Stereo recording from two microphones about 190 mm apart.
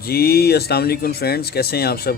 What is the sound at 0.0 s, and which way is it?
Speech, 55° left (ahead or behind).